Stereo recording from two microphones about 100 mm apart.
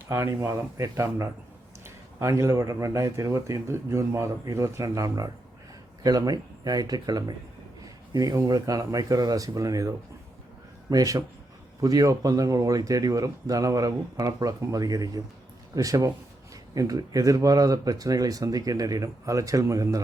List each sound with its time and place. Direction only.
0.1 s speech: 30° right (ahead or behind)
7.8 s a sound: 40° right (ahead or behind)
8.4 s speech: 35° right (ahead or behind)